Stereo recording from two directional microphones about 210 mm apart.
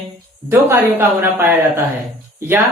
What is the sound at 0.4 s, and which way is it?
Speech, 10° right (ahead or behind).